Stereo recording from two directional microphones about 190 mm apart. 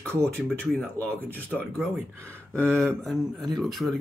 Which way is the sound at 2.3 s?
5° left (ahead or behind).